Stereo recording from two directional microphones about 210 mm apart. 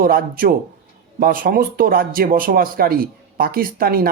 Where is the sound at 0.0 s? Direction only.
45° right (ahead or behind).